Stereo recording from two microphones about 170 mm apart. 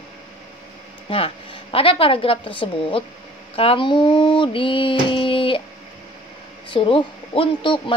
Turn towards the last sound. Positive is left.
turn(degrees=30)  # may be behind; listen again after turning